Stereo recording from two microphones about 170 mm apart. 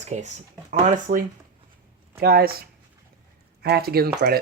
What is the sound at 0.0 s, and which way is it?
Speech, 45° right (ahead or behind).